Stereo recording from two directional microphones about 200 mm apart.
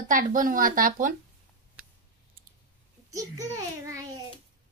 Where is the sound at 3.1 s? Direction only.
15° right (ahead or behind).